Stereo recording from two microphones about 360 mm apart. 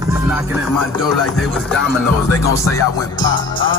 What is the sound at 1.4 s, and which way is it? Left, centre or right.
Music, centre.